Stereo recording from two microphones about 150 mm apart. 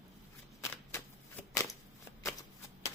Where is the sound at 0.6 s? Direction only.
15° left (ahead or behind).